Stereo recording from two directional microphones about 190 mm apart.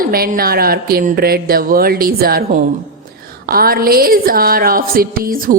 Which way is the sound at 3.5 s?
50° right (ahead or behind).